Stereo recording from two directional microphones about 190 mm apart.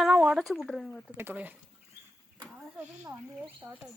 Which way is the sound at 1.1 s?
10° right (ahead or behind).